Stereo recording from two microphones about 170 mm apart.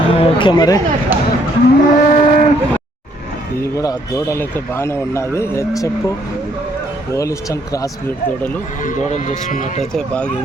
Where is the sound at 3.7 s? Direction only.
15° left (ahead or behind).